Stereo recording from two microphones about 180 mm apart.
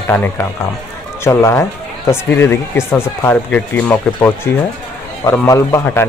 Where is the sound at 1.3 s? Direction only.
15° left (ahead or behind).